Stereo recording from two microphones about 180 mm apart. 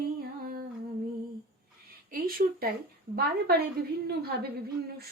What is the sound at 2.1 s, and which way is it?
Speech, 55° right (ahead or behind).